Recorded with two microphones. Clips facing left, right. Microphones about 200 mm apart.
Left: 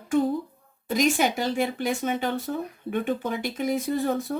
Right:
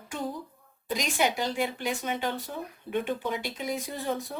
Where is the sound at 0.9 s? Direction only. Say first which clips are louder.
Left 5 dB; 50° left (ahead or behind).